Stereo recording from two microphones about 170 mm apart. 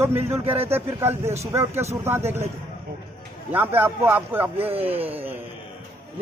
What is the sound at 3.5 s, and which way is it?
A man's voice, 10° right (ahead or behind).